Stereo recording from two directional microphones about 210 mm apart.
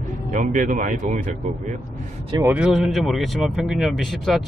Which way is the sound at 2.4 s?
5° right (ahead or behind).